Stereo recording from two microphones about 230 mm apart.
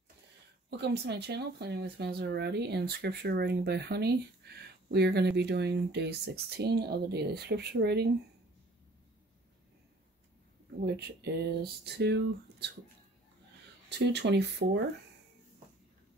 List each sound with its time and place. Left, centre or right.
0.7 s speech: right
11.0 s speech: right
13.8 s speech: right